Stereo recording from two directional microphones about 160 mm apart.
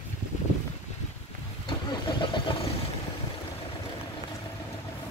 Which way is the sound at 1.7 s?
30° left (ahead or behind).